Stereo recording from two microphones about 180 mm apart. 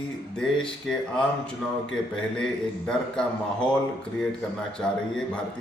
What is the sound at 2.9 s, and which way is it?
Speech, 5° left (ahead or behind).